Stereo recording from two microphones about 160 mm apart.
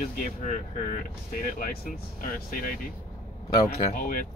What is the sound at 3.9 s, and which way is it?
Speech, 65° left (ahead or behind).